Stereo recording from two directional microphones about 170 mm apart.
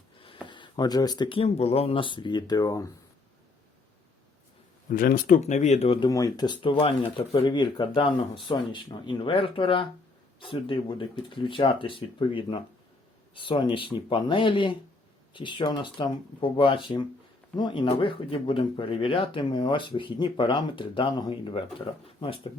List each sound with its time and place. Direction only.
0.4 s speech: 25° left (ahead or behind)
4.9 s speech: 60° left (ahead or behind)
5.4 s speech: 45° left (ahead or behind)
6.1 s speech: 20° left (ahead or behind)